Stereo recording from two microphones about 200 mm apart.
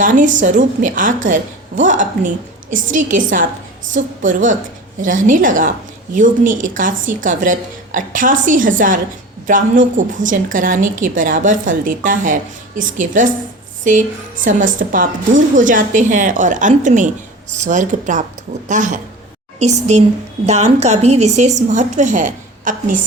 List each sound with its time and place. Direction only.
0.0 s a woman's voice: 40° right (ahead or behind)